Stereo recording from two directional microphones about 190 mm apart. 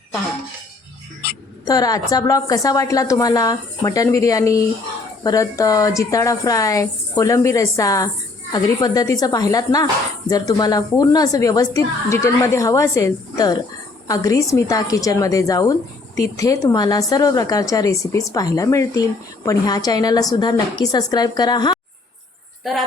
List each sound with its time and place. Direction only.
1.6 s a woman's voice: 20° left (ahead or behind)
22.6 s speech: centre (ahead or behind)